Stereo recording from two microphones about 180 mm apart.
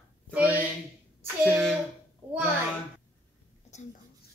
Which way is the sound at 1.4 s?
Centre (ahead or behind).